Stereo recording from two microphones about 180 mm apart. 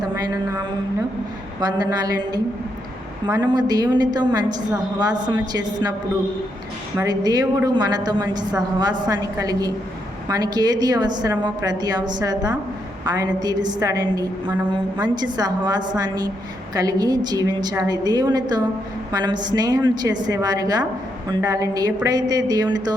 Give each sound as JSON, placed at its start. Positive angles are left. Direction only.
{"t": 1.6, "sound": "a woman's voice", "side_deg": -20}
{"t": 3.2, "sound": "a woman's voice", "side_deg": -10}
{"t": 3.5, "sound": "a woman's voice", "side_deg": -20}
{"t": 6.9, "sound": "a woman's voice", "side_deg": -20}